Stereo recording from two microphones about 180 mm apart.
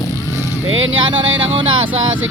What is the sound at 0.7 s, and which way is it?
Vehicle, 90° right.